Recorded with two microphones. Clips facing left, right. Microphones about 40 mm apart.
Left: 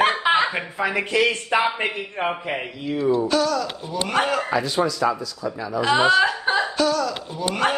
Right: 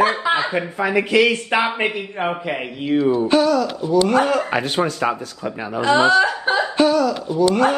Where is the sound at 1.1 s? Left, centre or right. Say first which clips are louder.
Right 4 dB; right.